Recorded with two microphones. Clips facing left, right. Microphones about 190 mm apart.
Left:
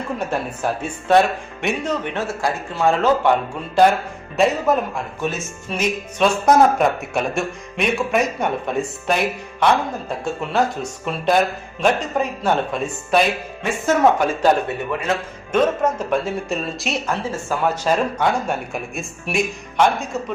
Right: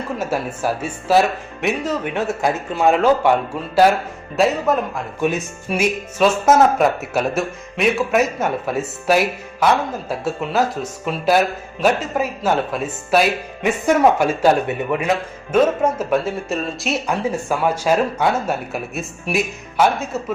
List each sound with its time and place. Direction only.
0.2 s speech: 5° right (ahead or behind)
2.1 s speech: 20° right (ahead or behind)
4.4 s speech: centre (ahead or behind)
5.2 s speech: 10° right (ahead or behind)
17.1 s speech: 10° right (ahead or behind)